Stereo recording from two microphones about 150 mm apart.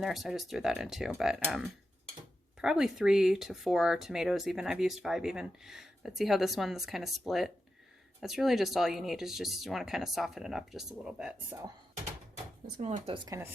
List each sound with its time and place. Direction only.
0.0 s speech: centre (ahead or behind)
13.2 s speech: 20° right (ahead or behind)